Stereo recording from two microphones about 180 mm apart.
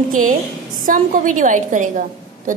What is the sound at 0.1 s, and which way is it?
A woman's voice, 50° right (ahead or behind).